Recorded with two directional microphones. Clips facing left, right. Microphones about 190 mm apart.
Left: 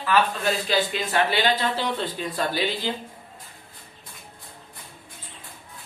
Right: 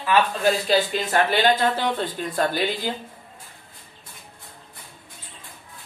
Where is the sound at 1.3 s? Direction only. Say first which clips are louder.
Right 4 dB; 50° right (ahead or behind).